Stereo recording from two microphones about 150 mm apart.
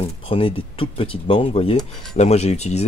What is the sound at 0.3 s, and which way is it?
Speech, 40° left (ahead or behind).